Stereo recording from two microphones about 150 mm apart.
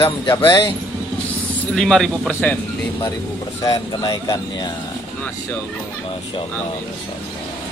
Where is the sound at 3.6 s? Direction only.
25° left (ahead or behind).